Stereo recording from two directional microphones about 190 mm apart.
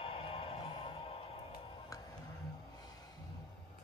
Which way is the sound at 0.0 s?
30° left (ahead or behind).